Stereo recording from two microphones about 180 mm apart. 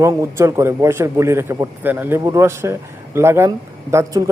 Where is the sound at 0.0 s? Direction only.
15° right (ahead or behind).